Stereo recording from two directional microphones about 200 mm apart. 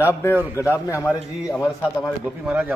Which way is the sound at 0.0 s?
10° left (ahead or behind).